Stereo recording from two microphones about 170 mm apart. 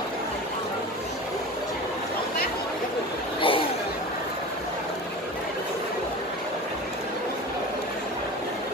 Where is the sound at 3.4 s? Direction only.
30° left (ahead or behind).